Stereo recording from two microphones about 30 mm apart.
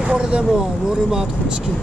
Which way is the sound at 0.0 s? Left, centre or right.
Right.